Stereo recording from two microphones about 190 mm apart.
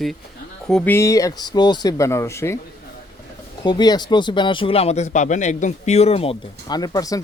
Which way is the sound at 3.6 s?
20° left (ahead or behind).